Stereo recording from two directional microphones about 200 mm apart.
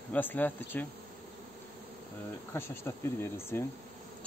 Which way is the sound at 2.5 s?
10° left (ahead or behind).